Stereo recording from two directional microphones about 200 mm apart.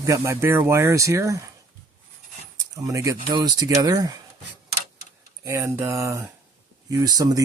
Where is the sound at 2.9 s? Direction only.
15° right (ahead or behind).